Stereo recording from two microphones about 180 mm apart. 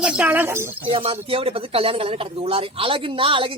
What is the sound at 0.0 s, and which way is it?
Music, 10° right (ahead or behind).